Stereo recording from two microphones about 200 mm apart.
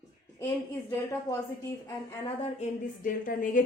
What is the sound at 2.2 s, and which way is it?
A woman's voice, 30° left (ahead or behind).